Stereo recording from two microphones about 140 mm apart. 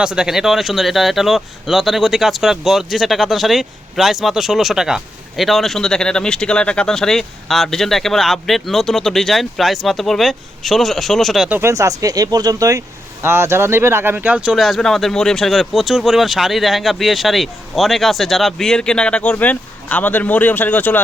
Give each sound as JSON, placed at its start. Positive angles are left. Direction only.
{"t": 0.0, "sound": "speech", "side_deg": -5}
{"t": 11.4, "sound": "speech", "side_deg": -10}
{"t": 11.7, "sound": "speech", "side_deg": -25}